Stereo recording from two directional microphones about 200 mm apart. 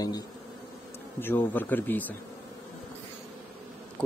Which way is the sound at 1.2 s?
10° left (ahead or behind).